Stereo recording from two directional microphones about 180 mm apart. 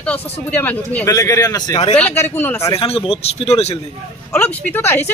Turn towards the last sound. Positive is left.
turn(degrees=10)  # may be behind; listen again after turning